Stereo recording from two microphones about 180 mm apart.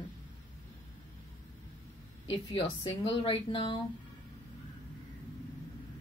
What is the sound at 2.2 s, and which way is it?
A woman's voice, 30° left (ahead or behind).